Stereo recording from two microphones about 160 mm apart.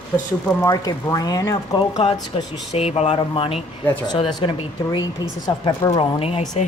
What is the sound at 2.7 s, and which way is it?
Speech, 40° left (ahead or behind).